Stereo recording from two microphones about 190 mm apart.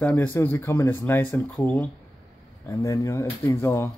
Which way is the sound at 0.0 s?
10° left (ahead or behind).